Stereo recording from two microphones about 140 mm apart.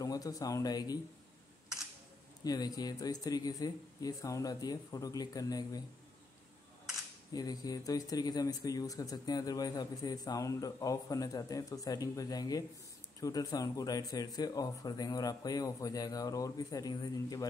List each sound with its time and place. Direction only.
0.0 s speech: 25° left (ahead or behind)
2.4 s speech: 30° left (ahead or behind)
7.3 s speech: 25° left (ahead or behind)